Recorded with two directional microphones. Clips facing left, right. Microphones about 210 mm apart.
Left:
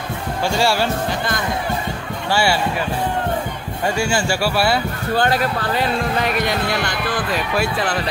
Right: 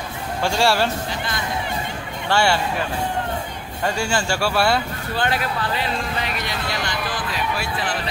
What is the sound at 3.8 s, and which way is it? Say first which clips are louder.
Speech: left 3 dB; 10° left (ahead or behind).